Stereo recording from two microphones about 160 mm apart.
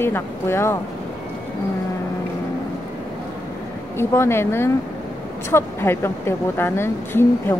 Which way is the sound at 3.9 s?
15° left (ahead or behind).